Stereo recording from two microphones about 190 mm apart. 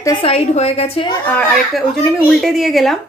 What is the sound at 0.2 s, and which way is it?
Speech, 30° left (ahead or behind).